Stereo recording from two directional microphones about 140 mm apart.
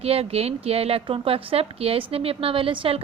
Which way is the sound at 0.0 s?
45° right (ahead or behind).